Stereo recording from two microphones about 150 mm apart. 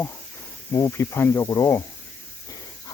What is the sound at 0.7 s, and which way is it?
Speech, 20° left (ahead or behind).